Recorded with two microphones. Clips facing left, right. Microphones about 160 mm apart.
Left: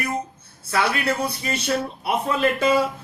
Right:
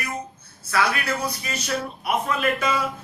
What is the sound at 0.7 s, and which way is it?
A man's voice, 30° left (ahead or behind).